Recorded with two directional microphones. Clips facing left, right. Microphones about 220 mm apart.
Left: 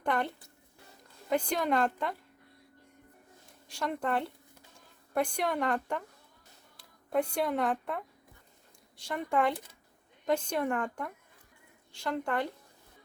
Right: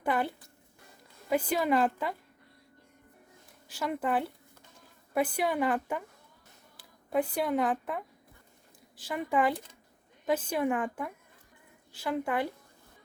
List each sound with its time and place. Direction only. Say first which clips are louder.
0.0 s a woman's voice: right 1 dB; 5° right (ahead or behind)
3.7 s a woman's voice: right 1 dB; 5° right (ahead or behind)